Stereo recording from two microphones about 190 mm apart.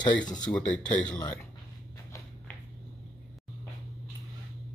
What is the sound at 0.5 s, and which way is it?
Speech, 5° left (ahead or behind).